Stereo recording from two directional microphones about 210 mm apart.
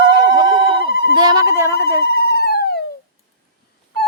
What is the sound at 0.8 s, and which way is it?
Telephone bell ringing, 45° left (ahead or behind).